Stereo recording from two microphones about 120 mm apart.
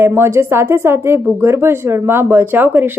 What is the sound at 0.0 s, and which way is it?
A woman's voice, 20° right (ahead or behind).